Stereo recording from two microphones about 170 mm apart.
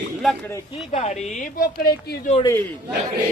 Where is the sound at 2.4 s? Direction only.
10° left (ahead or behind).